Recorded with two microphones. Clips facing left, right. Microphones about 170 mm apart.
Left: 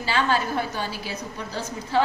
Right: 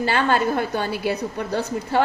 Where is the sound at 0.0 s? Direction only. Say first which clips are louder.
Right 4 dB; 55° right (ahead or behind).